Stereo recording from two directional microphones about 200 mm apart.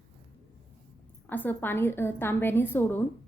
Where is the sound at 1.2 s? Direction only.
10° left (ahead or behind).